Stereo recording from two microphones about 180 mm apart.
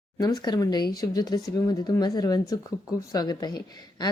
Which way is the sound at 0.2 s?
20° left (ahead or behind).